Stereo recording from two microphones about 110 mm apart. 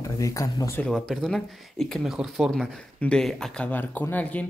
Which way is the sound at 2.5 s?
5° left (ahead or behind).